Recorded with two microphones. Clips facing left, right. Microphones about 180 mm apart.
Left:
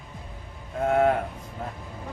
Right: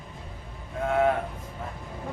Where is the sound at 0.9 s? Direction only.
40° left (ahead or behind).